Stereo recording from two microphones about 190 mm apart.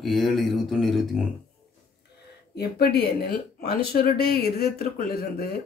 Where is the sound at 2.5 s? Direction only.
55° left (ahead or behind).